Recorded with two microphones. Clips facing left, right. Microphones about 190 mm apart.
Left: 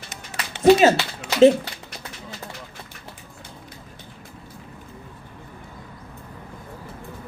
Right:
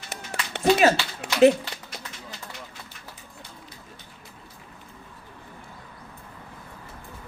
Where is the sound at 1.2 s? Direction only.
60° right (ahead or behind).